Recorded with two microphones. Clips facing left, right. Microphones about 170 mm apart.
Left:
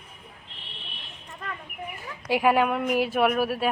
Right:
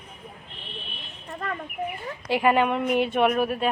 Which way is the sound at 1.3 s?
55° right (ahead or behind).